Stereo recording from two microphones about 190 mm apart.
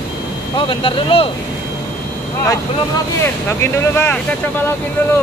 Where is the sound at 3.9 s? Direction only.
10° left (ahead or behind).